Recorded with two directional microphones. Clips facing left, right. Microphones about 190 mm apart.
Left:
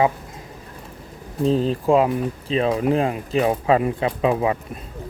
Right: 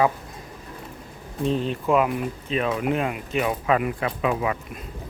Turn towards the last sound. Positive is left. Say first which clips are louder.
# left 4 dB
turn(degrees=30)  # may be behind; listen again after turning